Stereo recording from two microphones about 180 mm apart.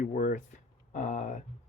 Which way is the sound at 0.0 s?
45° left (ahead or behind).